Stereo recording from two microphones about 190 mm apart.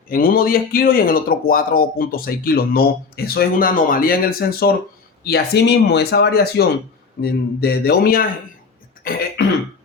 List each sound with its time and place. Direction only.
0.1 s speech: 50° left (ahead or behind)